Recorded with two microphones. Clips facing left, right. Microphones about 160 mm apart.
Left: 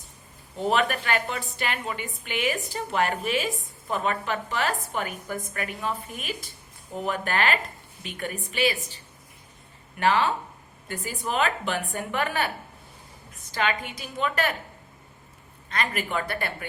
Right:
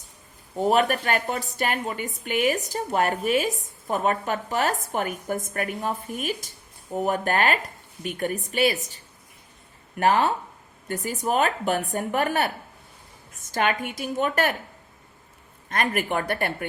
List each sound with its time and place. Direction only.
0.6 s a woman's voice: 45° right (ahead or behind)
10.0 s a woman's voice: 45° right (ahead or behind)
15.7 s a woman's voice: 50° right (ahead or behind)